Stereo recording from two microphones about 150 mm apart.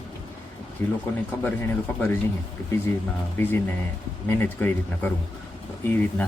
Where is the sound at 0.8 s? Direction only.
20° left (ahead or behind).